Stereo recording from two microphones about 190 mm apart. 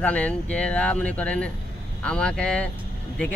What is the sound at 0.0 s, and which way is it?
Speech, 5° left (ahead or behind).